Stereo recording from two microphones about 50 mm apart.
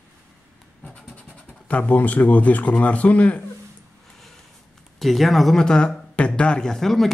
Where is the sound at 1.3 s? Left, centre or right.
Left.